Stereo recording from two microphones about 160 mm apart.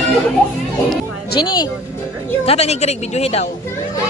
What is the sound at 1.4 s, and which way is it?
Speech, 25° left (ahead or behind).